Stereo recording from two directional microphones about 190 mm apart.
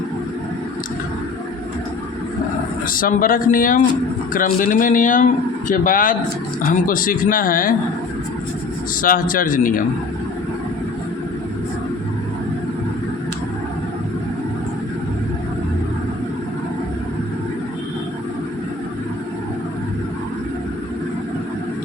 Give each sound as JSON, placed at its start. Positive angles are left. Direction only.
{"t": 2.8, "sound": "speech", "side_deg": 45}
{"t": 9.0, "sound": "speech", "side_deg": 45}